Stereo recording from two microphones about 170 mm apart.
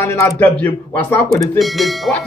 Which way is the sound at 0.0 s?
15° left (ahead or behind).